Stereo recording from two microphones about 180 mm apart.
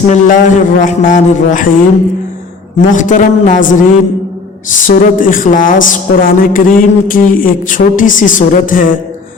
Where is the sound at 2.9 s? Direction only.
45° left (ahead or behind).